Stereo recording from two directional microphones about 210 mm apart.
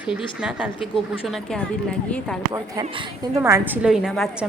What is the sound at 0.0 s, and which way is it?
A woman's voice, 5° right (ahead or behind).